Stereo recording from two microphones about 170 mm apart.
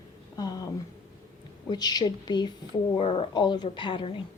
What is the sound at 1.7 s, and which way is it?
Speech, 25° left (ahead or behind).